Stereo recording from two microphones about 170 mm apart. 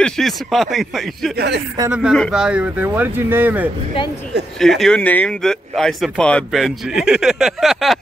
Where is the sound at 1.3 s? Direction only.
85° right.